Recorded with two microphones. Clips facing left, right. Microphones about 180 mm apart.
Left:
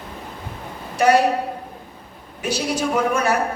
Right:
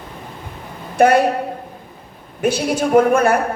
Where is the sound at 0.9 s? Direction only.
55° right (ahead or behind).